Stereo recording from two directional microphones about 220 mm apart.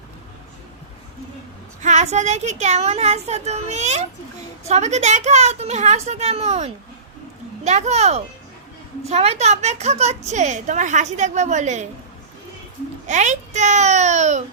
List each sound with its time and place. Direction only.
1.8 s a woman's voice: 30° right (ahead or behind)
13.1 s a woman's voice: 35° right (ahead or behind)